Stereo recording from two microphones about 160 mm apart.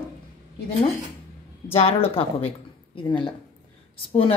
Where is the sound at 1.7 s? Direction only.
35° left (ahead or behind).